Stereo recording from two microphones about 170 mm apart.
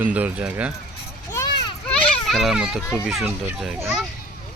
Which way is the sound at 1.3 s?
20° left (ahead or behind).